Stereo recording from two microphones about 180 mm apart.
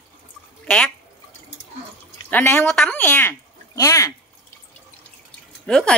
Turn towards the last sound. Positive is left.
turn(degrees=5)  # may be behind; listen again after turning